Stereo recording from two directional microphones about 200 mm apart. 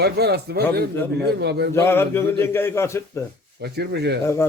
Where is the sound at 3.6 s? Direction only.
55° right (ahead or behind).